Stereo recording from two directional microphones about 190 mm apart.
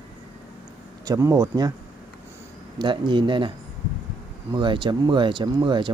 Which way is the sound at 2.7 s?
25° right (ahead or behind).